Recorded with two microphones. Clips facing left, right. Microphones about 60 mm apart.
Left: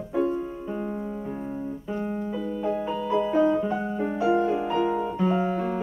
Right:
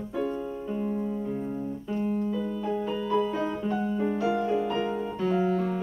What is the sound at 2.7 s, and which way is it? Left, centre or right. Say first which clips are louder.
Music: left 3 dB; centre.